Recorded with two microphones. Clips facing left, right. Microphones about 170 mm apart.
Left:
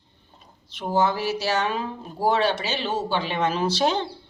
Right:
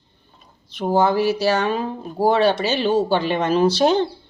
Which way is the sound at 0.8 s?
40° right (ahead or behind).